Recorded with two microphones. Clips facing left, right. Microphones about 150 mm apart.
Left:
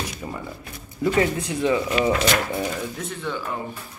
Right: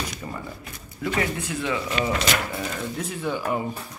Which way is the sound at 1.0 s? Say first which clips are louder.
Left 5 dB; 30° left (ahead or behind).